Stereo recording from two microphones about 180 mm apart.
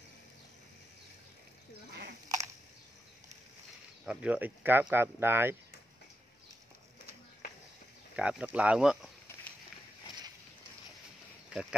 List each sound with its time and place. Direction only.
4.0 s speech: 5° right (ahead or behind)
8.2 s speech: 5° right (ahead or behind)